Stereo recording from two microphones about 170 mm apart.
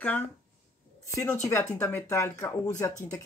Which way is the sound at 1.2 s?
15° left (ahead or behind).